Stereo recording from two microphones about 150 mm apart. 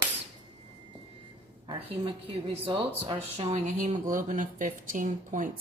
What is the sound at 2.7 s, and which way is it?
Speech, 35° right (ahead or behind).